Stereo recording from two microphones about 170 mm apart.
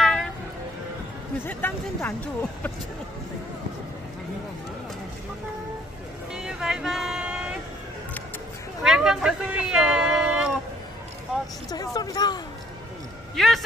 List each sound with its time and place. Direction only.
0.0 s vehicle: 5° left (ahead or behind)
1.4 s speech: 10° left (ahead or behind)
6.3 s a sound: 5° right (ahead or behind)
8.8 s speech: 5° right (ahead or behind)
11.7 s speech: 20° left (ahead or behind)
13.4 s a man's voice: centre (ahead or behind)